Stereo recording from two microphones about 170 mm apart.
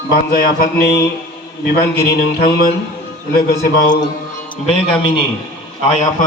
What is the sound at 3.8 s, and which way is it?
Speech, 25° left (ahead or behind).